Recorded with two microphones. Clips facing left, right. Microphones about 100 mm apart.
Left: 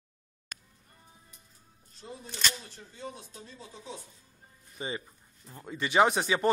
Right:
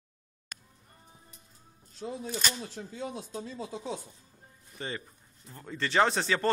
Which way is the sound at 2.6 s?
90° right.